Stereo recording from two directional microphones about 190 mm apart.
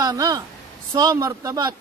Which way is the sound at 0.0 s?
20° right (ahead or behind).